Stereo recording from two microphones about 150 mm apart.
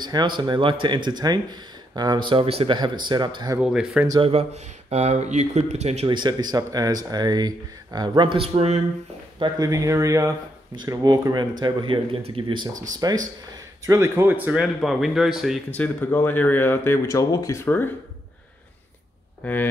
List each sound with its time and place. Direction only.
0.0 s speech: 30° right (ahead or behind)
3.5 s speech: 5° right (ahead or behind)
4.2 s speech: 40° right (ahead or behind)
6.0 s speech: 30° right (ahead or behind)
9.4 s speech: 25° right (ahead or behind)
13.0 s speech: 25° right (ahead or behind); by 15.6 s centre (ahead or behind)
15.7 s speech: 10° left (ahead or behind)
19.4 s speech: 10° left (ahead or behind)